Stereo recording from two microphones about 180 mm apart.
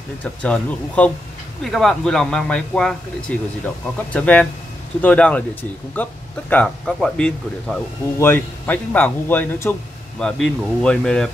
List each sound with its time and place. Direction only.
0.2 s speech: 10° left (ahead or behind)